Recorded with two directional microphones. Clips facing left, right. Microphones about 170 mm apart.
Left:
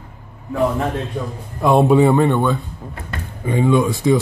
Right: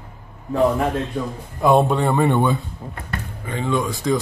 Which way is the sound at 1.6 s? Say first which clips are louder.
Left 4 dB; centre (ahead or behind).